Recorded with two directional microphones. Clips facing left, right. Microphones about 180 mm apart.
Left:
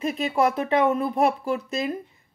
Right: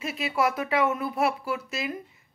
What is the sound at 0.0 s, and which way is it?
Speech, 35° left (ahead or behind).